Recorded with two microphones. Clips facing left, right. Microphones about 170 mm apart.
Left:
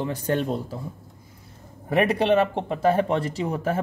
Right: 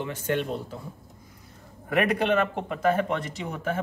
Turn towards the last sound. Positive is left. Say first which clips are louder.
# left 5 dB
turn(degrees=35)  # may be behind; listen again after turning